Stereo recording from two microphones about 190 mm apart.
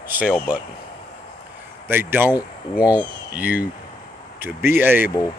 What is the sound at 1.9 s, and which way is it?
Speech, 10° right (ahead or behind).